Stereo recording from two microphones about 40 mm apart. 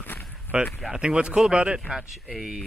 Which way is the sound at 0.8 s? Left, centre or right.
Centre.